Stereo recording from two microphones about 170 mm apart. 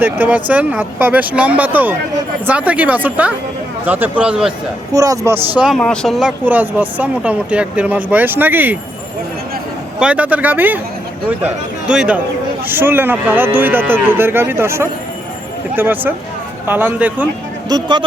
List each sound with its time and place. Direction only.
0.0 s speech: 10° right (ahead or behind)
4.9 s speech: 20° right (ahead or behind)
5.5 s speech: centre (ahead or behind)
10.0 s speech: 10° right (ahead or behind)
17.7 s speech: 25° right (ahead or behind)